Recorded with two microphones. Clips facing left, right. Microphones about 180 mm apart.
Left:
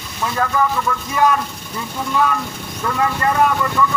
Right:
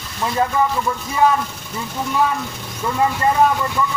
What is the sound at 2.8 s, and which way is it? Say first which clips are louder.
Speech: right 1 dB; 15° right (ahead or behind).